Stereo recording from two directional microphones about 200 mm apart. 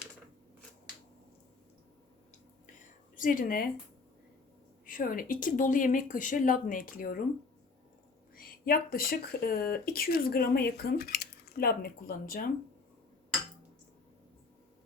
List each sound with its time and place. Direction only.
3.2 s speech: 45° left (ahead or behind)
4.9 s speech: 45° left (ahead or behind)
8.4 s speech: 45° left (ahead or behind)